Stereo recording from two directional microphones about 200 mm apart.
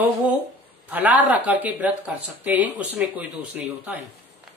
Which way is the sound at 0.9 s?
10° right (ahead or behind).